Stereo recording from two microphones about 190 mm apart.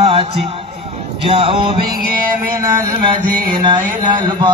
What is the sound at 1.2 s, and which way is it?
Mantra, 30° right (ahead or behind).